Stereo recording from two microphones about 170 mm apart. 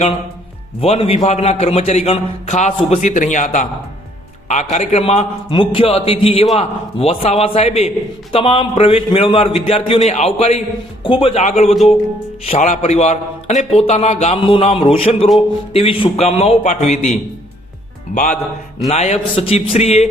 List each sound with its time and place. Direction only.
0.8 s a man's voice: 35° left (ahead or behind)
4.7 s a man's voice: 40° left (ahead or behind)
18.9 s a man's voice: 40° left (ahead or behind)